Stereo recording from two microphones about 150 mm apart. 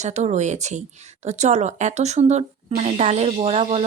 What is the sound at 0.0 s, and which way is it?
Speech, 50° right (ahead or behind).